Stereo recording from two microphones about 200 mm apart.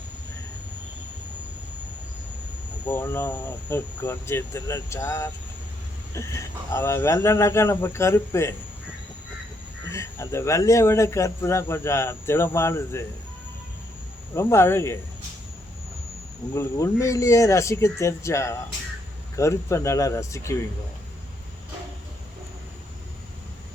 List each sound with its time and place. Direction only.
2.8 s speech: 10° left (ahead or behind)
9.9 s speech: 15° left (ahead or behind)
14.3 s speech: 15° left (ahead or behind)
16.6 s speech: 15° left (ahead or behind)